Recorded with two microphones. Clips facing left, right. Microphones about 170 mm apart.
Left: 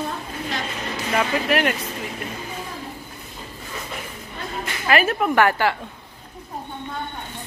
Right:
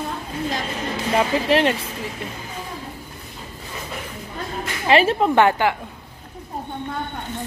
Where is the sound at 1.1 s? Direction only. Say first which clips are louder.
Right 3 dB; 25° right (ahead or behind).